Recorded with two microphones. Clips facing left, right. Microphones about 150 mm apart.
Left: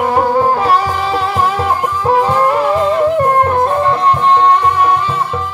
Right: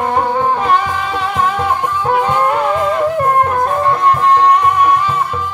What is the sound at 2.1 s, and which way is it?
Music, 35° left (ahead or behind).